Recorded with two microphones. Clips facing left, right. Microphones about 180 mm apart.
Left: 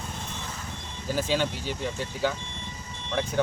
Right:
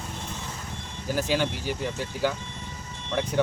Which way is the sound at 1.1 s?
10° right (ahead or behind).